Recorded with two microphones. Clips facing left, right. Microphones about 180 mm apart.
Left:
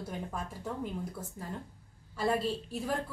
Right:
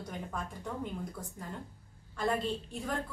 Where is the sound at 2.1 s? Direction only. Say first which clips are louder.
Left 2 dB; 5° left (ahead or behind).